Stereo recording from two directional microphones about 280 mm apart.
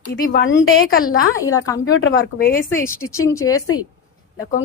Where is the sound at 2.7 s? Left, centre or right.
Centre.